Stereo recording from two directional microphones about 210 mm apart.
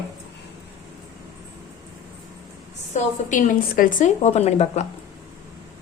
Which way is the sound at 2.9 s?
35° left (ahead or behind).